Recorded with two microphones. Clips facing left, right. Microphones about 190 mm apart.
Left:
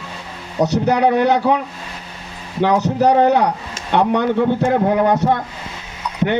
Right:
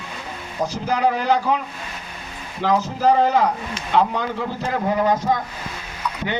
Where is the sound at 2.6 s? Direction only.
65° left (ahead or behind).